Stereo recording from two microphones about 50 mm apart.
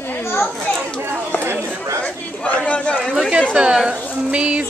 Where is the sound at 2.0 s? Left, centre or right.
Left.